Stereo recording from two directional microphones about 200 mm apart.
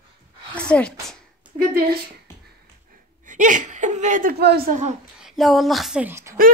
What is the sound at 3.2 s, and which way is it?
A woman's voice, 40° right (ahead or behind).